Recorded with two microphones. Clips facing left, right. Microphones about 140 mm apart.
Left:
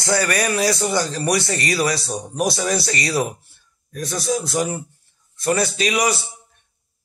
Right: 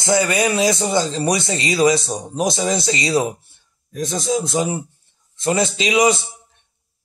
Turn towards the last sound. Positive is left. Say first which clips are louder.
# right 4 dB
turn(degrees=-20)  # may be behind; listen again after turning